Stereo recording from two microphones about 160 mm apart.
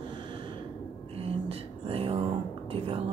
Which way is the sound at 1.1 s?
40° right (ahead or behind).